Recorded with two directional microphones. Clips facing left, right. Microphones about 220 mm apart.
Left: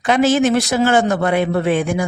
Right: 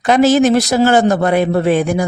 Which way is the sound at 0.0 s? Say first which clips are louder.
Right 4 dB; 40° right (ahead or behind).